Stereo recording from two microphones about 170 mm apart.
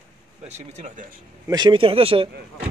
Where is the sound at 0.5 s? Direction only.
45° right (ahead or behind).